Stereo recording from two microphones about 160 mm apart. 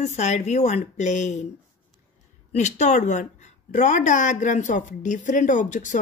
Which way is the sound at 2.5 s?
45° left (ahead or behind).